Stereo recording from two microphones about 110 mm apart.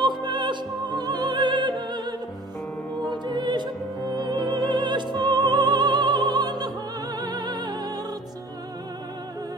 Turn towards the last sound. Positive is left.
turn(degrees=-40)  # may be behind; listen again after turning